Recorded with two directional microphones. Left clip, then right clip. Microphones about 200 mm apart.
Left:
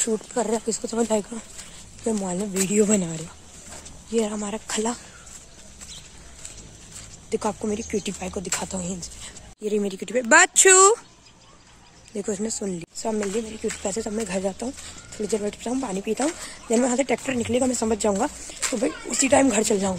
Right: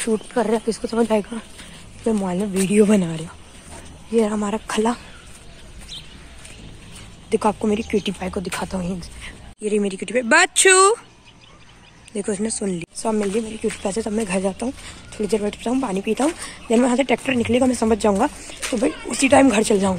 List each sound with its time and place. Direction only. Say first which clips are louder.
0.0 s speech: right 4 dB; centre (ahead or behind)
4.2 s speech: right 6 dB; 20° right (ahead or behind)
7.2 s speech: right 7 dB; 15° right (ahead or behind)
8.0 s speech: right 5 dB; centre (ahead or behind); by 11.0 s 20° left (ahead or behind)
12.1 s speech: right 3 dB; 15° left (ahead or behind)